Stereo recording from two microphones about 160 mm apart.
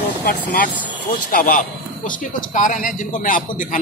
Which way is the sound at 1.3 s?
55° left (ahead or behind).